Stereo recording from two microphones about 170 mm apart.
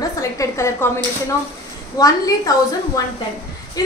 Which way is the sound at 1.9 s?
20° left (ahead or behind).